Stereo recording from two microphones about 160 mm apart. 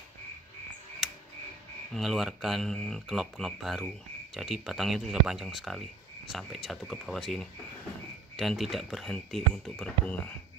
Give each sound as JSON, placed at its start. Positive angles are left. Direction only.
{"t": 2.0, "sound": "speech", "side_deg": 0}